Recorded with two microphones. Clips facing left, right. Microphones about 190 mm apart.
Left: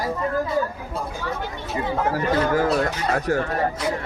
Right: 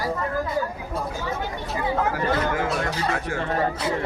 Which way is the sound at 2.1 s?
35° left (ahead or behind).